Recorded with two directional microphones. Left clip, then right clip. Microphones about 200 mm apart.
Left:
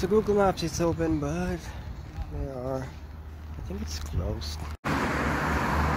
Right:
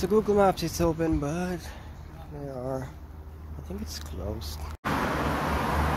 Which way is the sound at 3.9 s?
5° right (ahead or behind).